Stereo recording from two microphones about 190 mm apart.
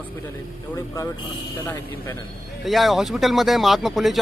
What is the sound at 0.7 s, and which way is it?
Speech, 20° left (ahead or behind).